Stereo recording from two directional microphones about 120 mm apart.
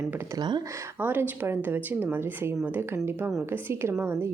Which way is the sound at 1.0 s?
15° right (ahead or behind).